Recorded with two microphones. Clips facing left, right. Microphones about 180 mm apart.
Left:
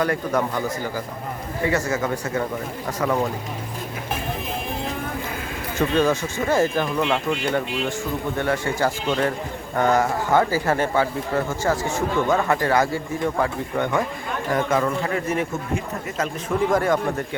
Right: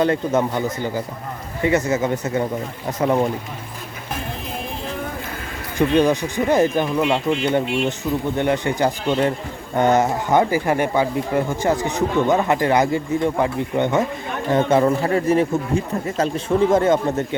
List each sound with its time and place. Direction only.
0.0 s speech: 25° right (ahead or behind)
5.7 s speech: 15° right (ahead or behind)